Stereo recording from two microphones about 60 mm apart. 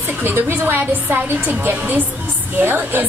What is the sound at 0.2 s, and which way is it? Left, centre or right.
A woman's voice, right.